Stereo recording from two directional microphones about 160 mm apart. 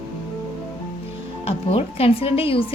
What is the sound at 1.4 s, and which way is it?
A woman's voice, 40° left (ahead or behind).